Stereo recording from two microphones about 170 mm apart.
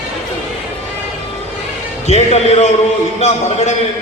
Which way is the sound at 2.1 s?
40° left (ahead or behind).